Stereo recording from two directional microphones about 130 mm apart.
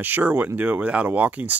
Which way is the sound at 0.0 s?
15° right (ahead or behind).